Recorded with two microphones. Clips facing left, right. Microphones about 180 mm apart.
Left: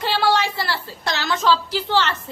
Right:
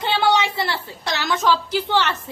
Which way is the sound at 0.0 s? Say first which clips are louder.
Right 1 dB; 20° right (ahead or behind).